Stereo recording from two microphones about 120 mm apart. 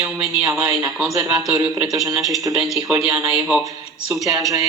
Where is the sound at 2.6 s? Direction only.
Centre (ahead or behind).